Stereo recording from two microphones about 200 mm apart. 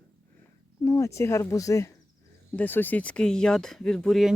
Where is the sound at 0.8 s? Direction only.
15° left (ahead or behind).